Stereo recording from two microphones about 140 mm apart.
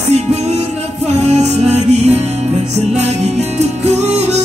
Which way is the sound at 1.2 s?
50° right (ahead or behind).